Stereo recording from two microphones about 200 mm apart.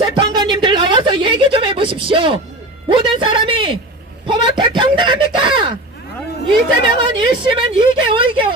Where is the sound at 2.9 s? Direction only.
25° right (ahead or behind).